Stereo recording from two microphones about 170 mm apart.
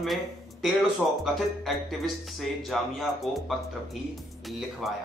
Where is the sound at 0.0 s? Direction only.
Centre (ahead or behind).